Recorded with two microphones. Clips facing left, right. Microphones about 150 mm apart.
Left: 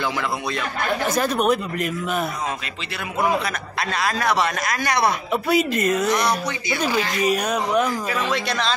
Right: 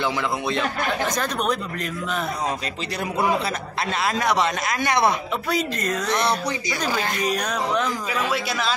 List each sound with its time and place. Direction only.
1.0 s speech: 5° left (ahead or behind)
3.9 s speech: 20° right (ahead or behind)
5.5 s speech: 10° left (ahead or behind)
6.9 s speech: 50° right (ahead or behind)
7.2 s speech: 10° left (ahead or behind)
8.1 s speech: 5° right (ahead or behind)